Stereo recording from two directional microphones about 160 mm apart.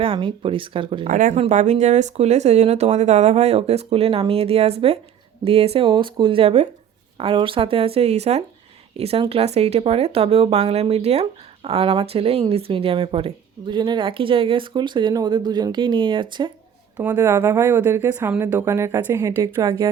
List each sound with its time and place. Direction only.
0.0 s speech: 35° right (ahead or behind)
1.0 s speech: 55° right (ahead or behind); by 16.5 s 30° right (ahead or behind)
17.0 s a woman's voice: 10° right (ahead or behind)